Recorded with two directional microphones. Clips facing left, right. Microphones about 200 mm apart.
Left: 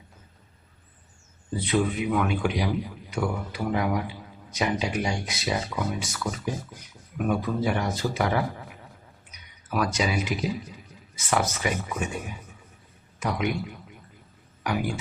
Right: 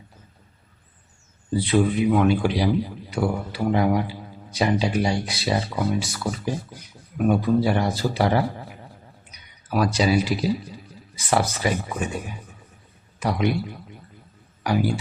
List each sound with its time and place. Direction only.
1.5 s a man's voice: 30° right (ahead or behind)
13.1 s a man's voice: 35° right (ahead or behind)